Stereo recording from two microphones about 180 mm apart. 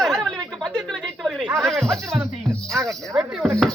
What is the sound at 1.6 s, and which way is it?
Speech, centre (ahead or behind).